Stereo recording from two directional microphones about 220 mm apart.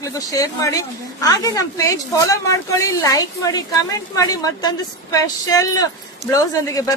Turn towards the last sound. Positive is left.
turn(degrees=15)  # may be behind; listen again after turning